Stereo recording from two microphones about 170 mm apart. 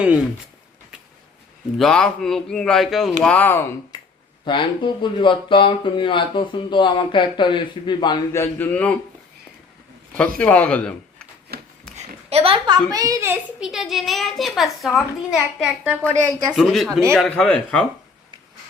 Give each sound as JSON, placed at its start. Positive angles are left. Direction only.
{"t": 1.8, "sound": "a child's voice", "side_deg": 5}
{"t": 3.9, "sound": "a sound", "side_deg": 25}
{"t": 4.4, "sound": "speech", "side_deg": 30}
{"t": 8.3, "sound": "speech", "side_deg": 15}
{"t": 10.2, "sound": "speech", "side_deg": 5}
{"t": 11.5, "sound": "a sound", "side_deg": -65}
{"t": 11.9, "sound": "a sound", "side_deg": -35}
{"t": 12.9, "sound": "a woman's voice", "side_deg": -20}
{"t": 13.6, "sound": "a child's voice", "side_deg": 0}